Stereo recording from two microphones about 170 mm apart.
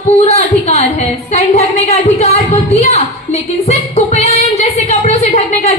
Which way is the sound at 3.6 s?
40° left (ahead or behind).